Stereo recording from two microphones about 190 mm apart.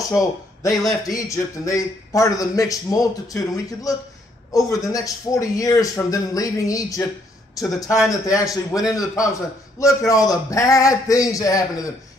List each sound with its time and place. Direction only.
0.1 s a man's voice: 15° left (ahead or behind)
8.1 s a man's voice: 20° left (ahead or behind)